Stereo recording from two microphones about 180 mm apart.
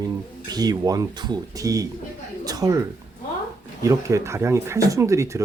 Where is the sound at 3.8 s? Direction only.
15° right (ahead or behind).